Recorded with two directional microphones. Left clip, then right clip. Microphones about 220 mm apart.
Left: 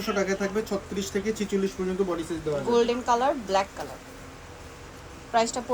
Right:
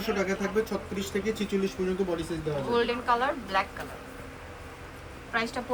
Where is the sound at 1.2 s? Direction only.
5° left (ahead or behind).